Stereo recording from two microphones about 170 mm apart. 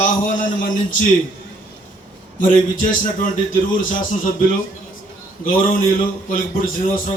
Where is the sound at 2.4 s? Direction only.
50° left (ahead or behind).